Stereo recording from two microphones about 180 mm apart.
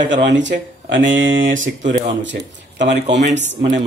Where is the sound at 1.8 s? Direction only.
45° right (ahead or behind).